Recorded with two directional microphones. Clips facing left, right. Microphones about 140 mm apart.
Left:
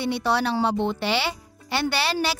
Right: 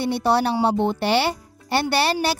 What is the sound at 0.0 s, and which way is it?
A woman's voice, 45° right (ahead or behind).